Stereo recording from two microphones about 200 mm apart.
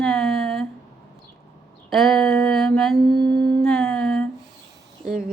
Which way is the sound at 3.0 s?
55° right (ahead or behind).